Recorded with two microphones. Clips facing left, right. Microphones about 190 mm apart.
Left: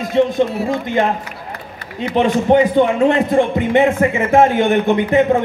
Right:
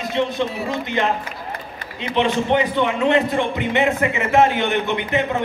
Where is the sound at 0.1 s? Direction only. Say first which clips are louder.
Left 8 dB; 50° left (ahead or behind).